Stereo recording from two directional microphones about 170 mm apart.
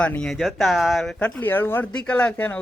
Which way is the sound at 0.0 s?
5° left (ahead or behind).